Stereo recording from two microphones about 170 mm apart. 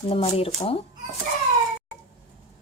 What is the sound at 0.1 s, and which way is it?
Speech, 35° left (ahead or behind).